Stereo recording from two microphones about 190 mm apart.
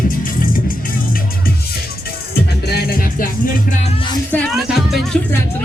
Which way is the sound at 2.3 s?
55° left (ahead or behind).